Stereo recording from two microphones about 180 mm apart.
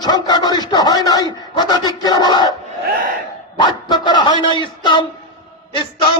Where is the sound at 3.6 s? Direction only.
25° left (ahead or behind).